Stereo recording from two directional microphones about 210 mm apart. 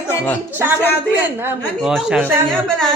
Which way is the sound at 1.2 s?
10° right (ahead or behind).